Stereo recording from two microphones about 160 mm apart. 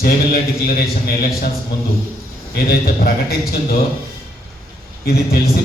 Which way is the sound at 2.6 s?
75° left (ahead or behind).